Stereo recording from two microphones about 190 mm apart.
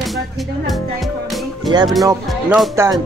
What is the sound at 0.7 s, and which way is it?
Music, centre (ahead or behind).